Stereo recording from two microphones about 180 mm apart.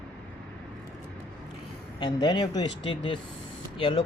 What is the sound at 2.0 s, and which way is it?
Speech, 25° left (ahead or behind).